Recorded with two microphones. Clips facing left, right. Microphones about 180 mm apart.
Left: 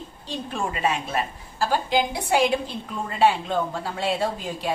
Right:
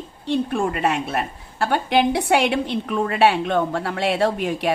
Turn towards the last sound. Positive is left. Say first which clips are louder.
# right 6 dB
turn(degrees=-70)  # may be behind; listen again after turning